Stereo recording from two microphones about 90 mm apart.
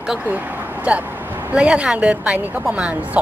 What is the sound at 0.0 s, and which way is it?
Speech, 10° right (ahead or behind).